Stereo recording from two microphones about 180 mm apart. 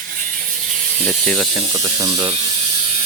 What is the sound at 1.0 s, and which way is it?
Speech, 5° left (ahead or behind).